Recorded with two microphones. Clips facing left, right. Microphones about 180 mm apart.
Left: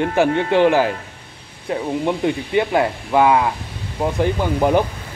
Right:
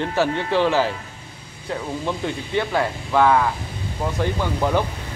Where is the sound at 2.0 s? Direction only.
15° left (ahead or behind).